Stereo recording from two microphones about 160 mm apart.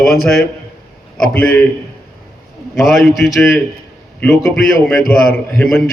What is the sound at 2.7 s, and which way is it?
Speech, centre (ahead or behind).